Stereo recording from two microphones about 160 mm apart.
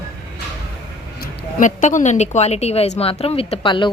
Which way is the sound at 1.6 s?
50° left (ahead or behind).